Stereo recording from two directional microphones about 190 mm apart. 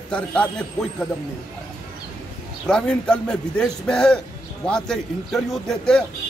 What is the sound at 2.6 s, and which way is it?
Speech, 5° left (ahead or behind).